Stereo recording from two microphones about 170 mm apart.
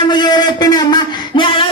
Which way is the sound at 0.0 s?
25° left (ahead or behind).